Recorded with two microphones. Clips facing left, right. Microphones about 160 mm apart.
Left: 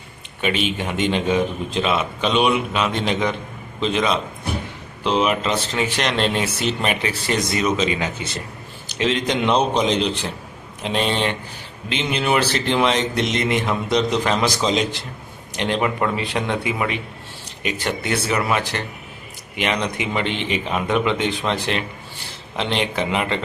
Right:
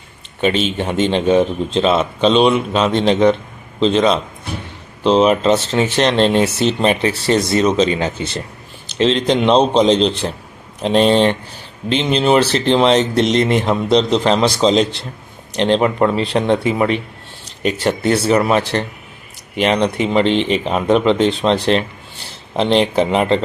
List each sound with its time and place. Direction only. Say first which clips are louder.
0.4 s a man's voice: right 5 dB; 30° right (ahead or behind)